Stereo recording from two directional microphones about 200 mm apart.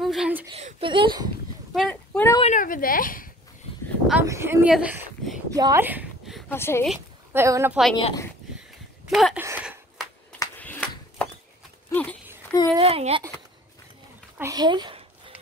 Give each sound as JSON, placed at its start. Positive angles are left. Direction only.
{"t": 0.0, "sound": "speech", "side_deg": 0}
{"t": 0.6, "sound": "speech", "side_deg": -30}
{"t": 1.7, "sound": "speech", "side_deg": 5}
{"t": 2.4, "sound": "speech", "side_deg": 40}
{"t": 4.1, "sound": "speech", "side_deg": -10}
{"t": 5.5, "sound": "speech", "side_deg": -15}
{"t": 6.5, "sound": "speech", "side_deg": 10}
{"t": 7.3, "sound": "speech", "side_deg": -15}
{"t": 8.0, "sound": "a woman's voice", "side_deg": 20}
{"t": 9.1, "sound": "speech", "side_deg": 0}
{"t": 9.4, "sound": "a sound", "side_deg": -10}
{"t": 10.4, "sound": "a sound", "side_deg": 10}
{"t": 12.7, "sound": "speech", "side_deg": -30}
{"t": 14.4, "sound": "a sound", "side_deg": -20}